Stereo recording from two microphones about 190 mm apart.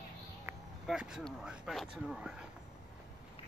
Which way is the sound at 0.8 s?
5° right (ahead or behind).